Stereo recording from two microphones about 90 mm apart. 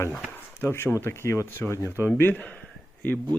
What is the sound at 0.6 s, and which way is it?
Speech, 30° left (ahead or behind).